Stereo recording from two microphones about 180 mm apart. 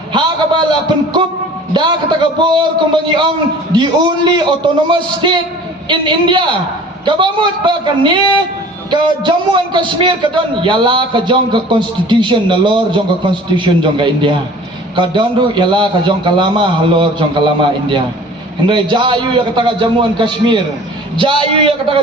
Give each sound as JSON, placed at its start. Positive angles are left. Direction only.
{"t": 0.1, "sound": "a man's voice", "side_deg": -25}